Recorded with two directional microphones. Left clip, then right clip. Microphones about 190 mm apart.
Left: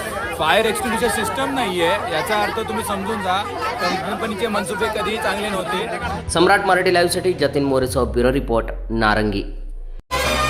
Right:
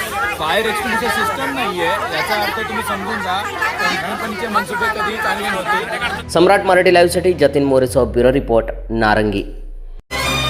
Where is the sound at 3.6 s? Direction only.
35° right (ahead or behind).